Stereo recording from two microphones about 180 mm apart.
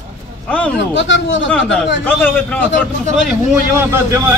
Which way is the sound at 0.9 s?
90° left.